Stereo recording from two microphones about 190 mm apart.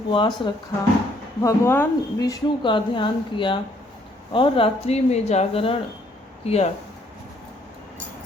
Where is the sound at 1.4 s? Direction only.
15° left (ahead or behind); by 6.7 s 35° left (ahead or behind).